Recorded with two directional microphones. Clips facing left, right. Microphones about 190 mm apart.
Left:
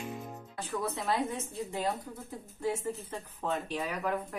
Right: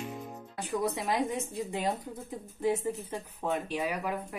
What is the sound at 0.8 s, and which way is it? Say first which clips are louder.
A woman's voice: right 1 dB; 15° right (ahead or behind).